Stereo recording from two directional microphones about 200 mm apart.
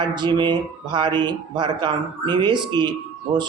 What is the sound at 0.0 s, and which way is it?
A man's voice, 20° right (ahead or behind).